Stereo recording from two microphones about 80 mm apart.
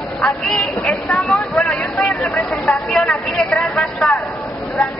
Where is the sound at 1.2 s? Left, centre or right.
Centre.